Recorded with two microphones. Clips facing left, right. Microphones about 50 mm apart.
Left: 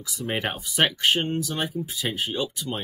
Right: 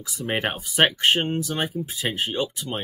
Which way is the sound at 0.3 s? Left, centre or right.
Right.